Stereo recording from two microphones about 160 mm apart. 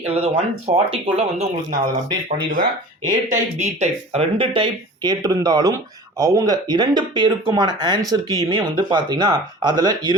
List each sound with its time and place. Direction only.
0.0 s speech: 35° right (ahead or behind)
3.2 s speech: 45° right (ahead or behind); by 10.2 s 25° right (ahead or behind)